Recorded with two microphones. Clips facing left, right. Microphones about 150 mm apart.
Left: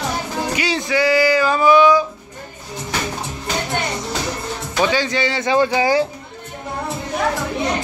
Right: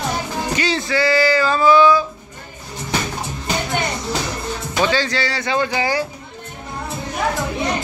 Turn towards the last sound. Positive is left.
turn(degrees=20)  # may be behind; listen again after turning